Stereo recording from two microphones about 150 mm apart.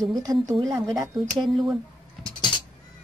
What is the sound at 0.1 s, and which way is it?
Speech, 25° right (ahead or behind).